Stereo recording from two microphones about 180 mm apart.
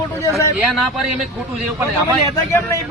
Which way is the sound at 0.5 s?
Centre (ahead or behind).